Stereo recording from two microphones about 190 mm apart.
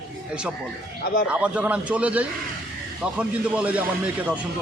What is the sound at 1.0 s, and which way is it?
Speech, 50° left (ahead or behind).